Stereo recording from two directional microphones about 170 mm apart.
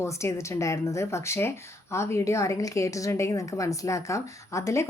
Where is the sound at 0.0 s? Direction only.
15° left (ahead or behind).